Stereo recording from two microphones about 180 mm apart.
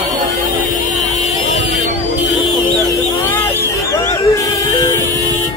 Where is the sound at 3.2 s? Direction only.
10° left (ahead or behind).